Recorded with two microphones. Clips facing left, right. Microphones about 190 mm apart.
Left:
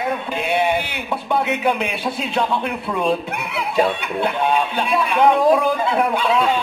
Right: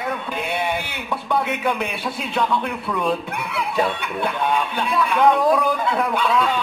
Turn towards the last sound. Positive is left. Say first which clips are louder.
# left 2 dB
turn(degrees=25)  # may be behind; listen again after turning